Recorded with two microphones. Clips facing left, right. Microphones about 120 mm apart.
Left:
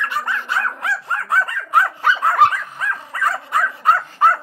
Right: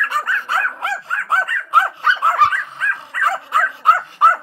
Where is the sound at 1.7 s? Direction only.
25° right (ahead or behind).